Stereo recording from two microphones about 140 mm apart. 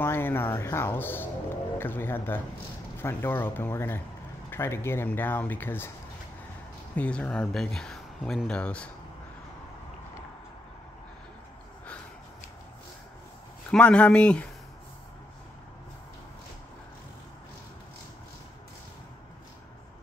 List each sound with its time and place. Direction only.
0.0 s speech: 15° left (ahead or behind)
7.0 s speech: 10° left (ahead or behind)
13.7 s speech: 5° left (ahead or behind)